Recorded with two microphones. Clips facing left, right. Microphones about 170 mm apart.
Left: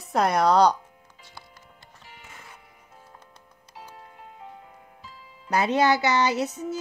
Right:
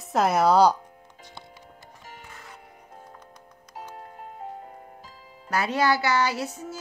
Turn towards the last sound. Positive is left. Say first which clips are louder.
# left 4 dB
turn(degrees=20)  # may be behind; listen again after turning